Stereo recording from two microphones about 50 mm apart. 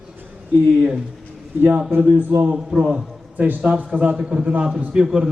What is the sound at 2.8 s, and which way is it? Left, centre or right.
Speech, right.